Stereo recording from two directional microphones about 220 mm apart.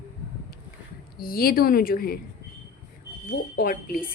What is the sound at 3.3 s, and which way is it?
Speech, 40° left (ahead or behind).